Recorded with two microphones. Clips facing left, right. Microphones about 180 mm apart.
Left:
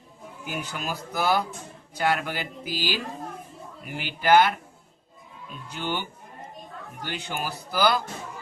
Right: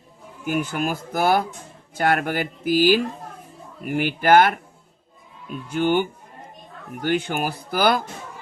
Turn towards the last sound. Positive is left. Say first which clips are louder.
# right 3 dB
turn(degrees=-50)  # may be behind; listen again after turning